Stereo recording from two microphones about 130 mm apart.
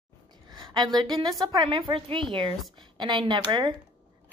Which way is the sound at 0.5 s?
30° right (ahead or behind).